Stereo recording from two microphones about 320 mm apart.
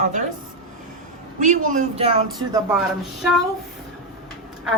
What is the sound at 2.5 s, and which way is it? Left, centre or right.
Speech, centre.